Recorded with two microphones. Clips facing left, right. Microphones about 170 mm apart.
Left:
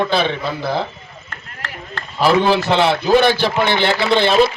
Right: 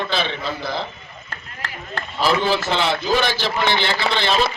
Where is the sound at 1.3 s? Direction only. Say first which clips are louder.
Left 1 dB; 35° right (ahead or behind).